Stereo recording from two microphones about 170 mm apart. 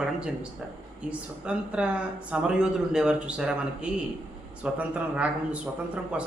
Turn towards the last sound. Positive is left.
turn(degrees=-5)  # may be behind; listen again after turning